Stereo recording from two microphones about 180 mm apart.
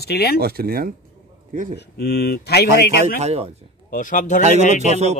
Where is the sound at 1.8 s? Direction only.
60° left (ahead or behind).